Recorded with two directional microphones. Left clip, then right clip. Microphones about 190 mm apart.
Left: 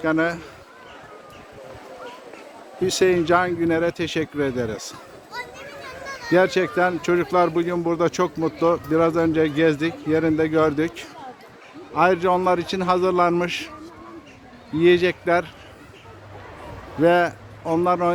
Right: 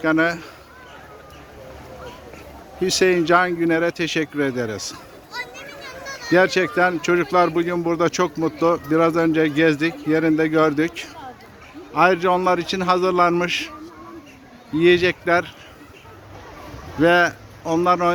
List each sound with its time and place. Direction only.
0.0 s speech: centre (ahead or behind)
2.8 s speech: centre (ahead or behind)
5.3 s children playing: 30° left (ahead or behind)
6.3 s speech: centre (ahead or behind)
14.8 s speech: 5° left (ahead or behind)
17.0 s speech: 5° left (ahead or behind)